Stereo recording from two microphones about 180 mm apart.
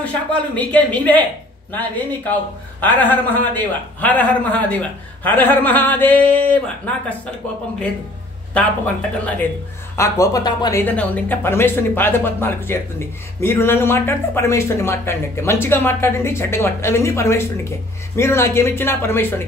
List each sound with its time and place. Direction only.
0.0 s speech: 10° left (ahead or behind)
8.5 s speech: 5° left (ahead or behind)
10.8 s speech: 10° left (ahead or behind)